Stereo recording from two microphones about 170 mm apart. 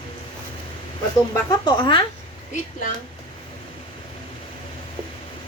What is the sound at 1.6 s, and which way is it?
Speech, 30° left (ahead or behind).